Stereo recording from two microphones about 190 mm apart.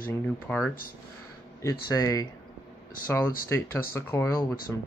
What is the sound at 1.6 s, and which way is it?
Speech, 20° left (ahead or behind).